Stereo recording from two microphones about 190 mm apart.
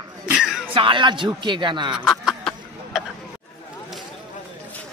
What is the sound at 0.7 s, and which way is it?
Speech, 25° right (ahead or behind).